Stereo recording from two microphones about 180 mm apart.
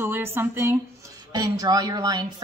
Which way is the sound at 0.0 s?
10° right (ahead or behind).